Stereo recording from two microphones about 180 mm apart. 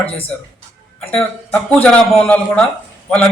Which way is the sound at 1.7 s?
5° left (ahead or behind).